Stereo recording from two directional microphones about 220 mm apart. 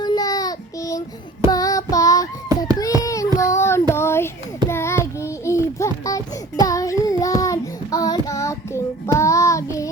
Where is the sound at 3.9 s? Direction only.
10° left (ahead or behind).